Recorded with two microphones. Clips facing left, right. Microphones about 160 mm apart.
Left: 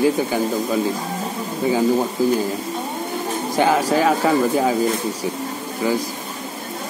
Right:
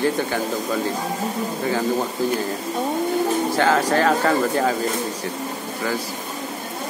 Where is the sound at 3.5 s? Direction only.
15° left (ahead or behind).